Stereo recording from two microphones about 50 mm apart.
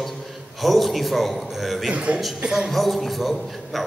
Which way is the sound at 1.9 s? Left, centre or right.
Right.